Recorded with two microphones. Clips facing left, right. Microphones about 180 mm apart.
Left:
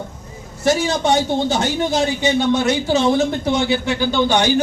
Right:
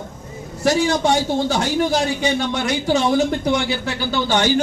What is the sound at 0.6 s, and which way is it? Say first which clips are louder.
A man's voice: even; 20° left (ahead or behind).